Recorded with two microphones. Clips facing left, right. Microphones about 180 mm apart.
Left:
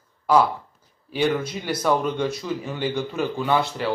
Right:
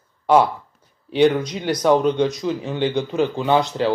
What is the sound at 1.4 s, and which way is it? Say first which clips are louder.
Speech: right 5 dB; 15° right (ahead or behind).